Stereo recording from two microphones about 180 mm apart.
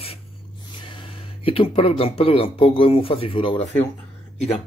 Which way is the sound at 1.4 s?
30° left (ahead or behind).